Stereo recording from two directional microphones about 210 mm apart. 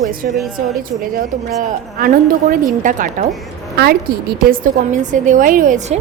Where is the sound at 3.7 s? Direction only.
50° right (ahead or behind).